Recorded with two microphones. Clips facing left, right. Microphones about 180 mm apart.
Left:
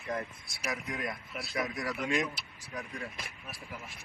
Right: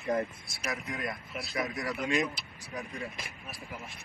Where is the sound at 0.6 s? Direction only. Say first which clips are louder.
Even; 5° left (ahead or behind).